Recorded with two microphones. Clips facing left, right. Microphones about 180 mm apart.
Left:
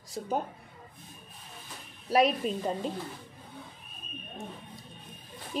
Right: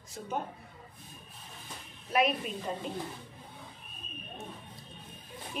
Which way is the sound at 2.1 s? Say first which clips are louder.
Left 4 dB; 35° left (ahead or behind).